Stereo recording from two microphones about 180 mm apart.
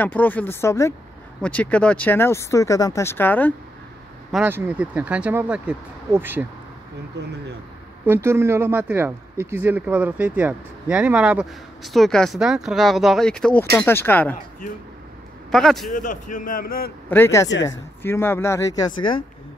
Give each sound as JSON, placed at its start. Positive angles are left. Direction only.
{"t": 0.0, "sound": "speech", "side_deg": 10}
{"t": 4.3, "sound": "speech", "side_deg": -10}
{"t": 8.0, "sound": "speech", "side_deg": -15}
{"t": 15.5, "sound": "speech", "side_deg": 0}
{"t": 15.9, "sound": "speech", "side_deg": 45}
{"t": 17.1, "sound": "speech", "side_deg": 15}